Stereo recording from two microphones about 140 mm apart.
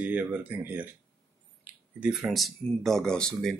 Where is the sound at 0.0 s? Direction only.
10° right (ahead or behind).